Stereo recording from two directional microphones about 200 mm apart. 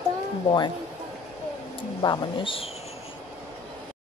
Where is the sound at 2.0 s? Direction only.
20° left (ahead or behind).